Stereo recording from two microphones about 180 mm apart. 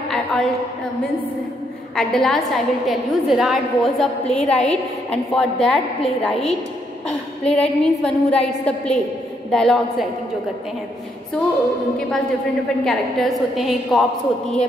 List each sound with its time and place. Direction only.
0.1 s a sound: 5° left (ahead or behind)
2.0 s a woman's voice: centre (ahead or behind)
12.8 s a woman's voice: centre (ahead or behind)